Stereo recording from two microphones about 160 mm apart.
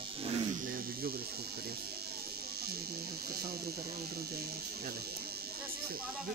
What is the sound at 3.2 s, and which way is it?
Speech, 75° right (ahead or behind).